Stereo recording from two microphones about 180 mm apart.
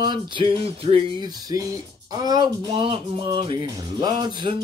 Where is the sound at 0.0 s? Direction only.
25° right (ahead or behind).